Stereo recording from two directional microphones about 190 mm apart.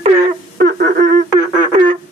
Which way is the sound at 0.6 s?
50° right (ahead or behind).